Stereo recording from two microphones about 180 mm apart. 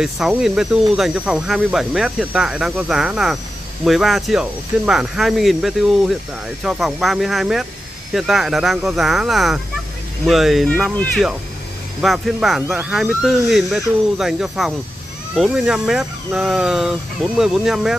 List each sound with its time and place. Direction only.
0.0 s speech: 5° right (ahead or behind)